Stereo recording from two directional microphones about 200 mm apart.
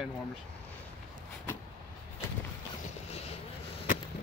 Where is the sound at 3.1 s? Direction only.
30° left (ahead or behind).